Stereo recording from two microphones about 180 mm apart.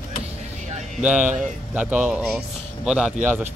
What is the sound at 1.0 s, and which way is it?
A man's voice, 5° right (ahead or behind).